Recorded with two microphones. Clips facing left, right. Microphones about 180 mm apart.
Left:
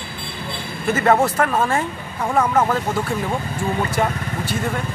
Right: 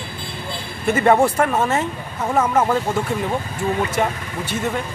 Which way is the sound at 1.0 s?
15° right (ahead or behind).